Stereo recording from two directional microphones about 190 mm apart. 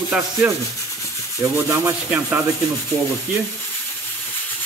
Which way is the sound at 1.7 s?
15° right (ahead or behind).